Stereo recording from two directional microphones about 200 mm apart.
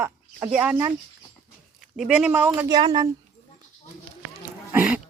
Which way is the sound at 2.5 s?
20° right (ahead or behind).